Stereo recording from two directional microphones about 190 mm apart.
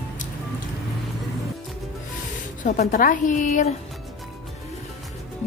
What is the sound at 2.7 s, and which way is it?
Speech, 40° left (ahead or behind).